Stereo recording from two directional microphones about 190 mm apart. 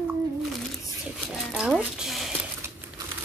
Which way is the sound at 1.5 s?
5° right (ahead or behind).